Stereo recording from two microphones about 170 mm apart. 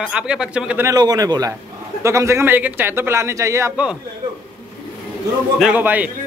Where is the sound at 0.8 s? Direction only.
20° right (ahead or behind).